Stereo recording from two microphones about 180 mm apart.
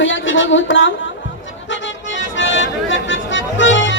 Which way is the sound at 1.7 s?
90° left.